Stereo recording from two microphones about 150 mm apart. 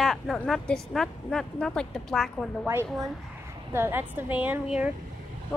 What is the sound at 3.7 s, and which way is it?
A woman's voice, 15° right (ahead or behind).